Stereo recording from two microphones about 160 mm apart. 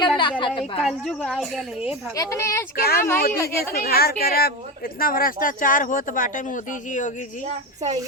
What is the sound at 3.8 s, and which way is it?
Speech, 70° left (ahead or behind).